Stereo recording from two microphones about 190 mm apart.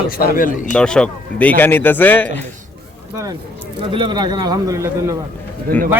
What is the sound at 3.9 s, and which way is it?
A man's voice, 25° right (ahead or behind).